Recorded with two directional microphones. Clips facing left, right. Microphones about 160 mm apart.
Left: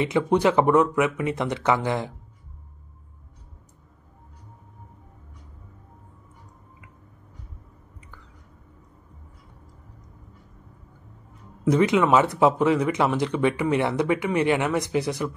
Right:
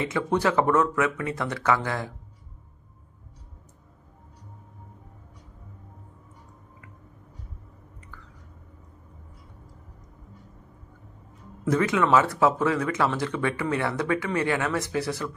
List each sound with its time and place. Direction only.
0.0 s speech: 15° left (ahead or behind)
11.7 s speech: 15° left (ahead or behind)